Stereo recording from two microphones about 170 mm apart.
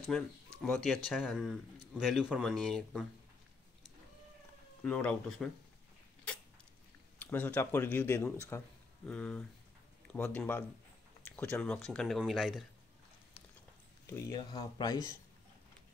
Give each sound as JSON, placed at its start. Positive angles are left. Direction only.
{"t": 0.1, "sound": "speech", "side_deg": 5}
{"t": 4.8, "sound": "speech", "side_deg": 10}
{"t": 7.2, "sound": "speech", "side_deg": 10}
{"t": 14.0, "sound": "speech", "side_deg": 15}